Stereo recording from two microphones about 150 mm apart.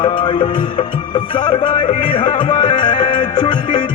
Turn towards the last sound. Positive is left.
turn(degrees=30)  # may be behind; listen again after turning